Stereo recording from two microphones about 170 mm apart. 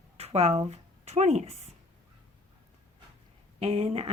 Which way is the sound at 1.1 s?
40° right (ahead or behind).